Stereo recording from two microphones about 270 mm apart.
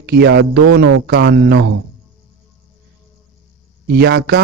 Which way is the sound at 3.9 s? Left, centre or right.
Right.